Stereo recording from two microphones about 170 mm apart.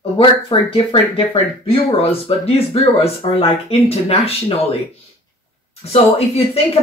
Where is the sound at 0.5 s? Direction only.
30° left (ahead or behind).